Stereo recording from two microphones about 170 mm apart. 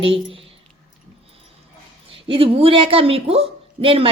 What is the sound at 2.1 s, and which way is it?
A woman's voice, 30° right (ahead or behind).